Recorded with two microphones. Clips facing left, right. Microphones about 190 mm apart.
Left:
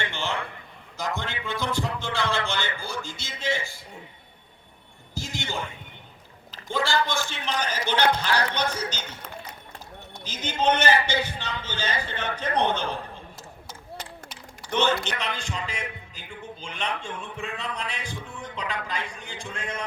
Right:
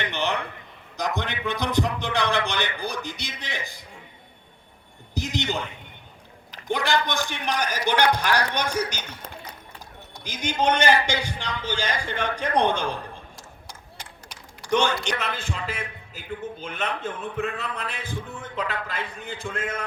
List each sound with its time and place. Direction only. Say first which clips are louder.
0.0 s a sound: right 3 dB; 20° right (ahead or behind)
0.9 s speech: right 3 dB; 20° right (ahead or behind)
5.1 s a man's voice: right 5 dB; 20° right (ahead or behind)
10.2 s speech: right 1 dB; 15° right (ahead or behind)
14.6 s a sound: right 2 dB; 15° right (ahead or behind)
15.0 s a man's voice: right 3 dB; 5° right (ahead or behind)